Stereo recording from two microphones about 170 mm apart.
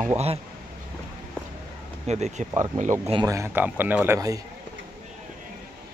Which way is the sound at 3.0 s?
30° right (ahead or behind).